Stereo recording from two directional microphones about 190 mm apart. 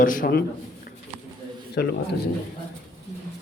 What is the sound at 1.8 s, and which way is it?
Speech, 55° left (ahead or behind).